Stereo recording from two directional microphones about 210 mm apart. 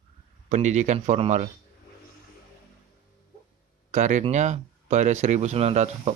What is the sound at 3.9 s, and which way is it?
Speech, 35° right (ahead or behind).